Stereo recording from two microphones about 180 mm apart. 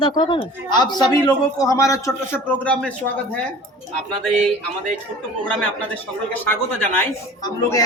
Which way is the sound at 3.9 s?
5° left (ahead or behind).